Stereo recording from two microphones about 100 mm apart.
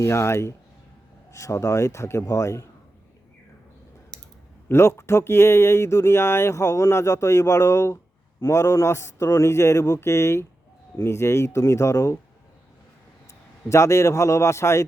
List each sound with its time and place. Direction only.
0.0 s a man's voice: 25° left (ahead or behind)
4.7 s speech: 25° left (ahead or behind)
13.7 s speech: 30° left (ahead or behind)